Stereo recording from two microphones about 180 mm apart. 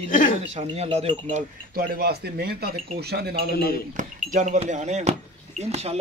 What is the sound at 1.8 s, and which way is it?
Speech, 55° right (ahead or behind).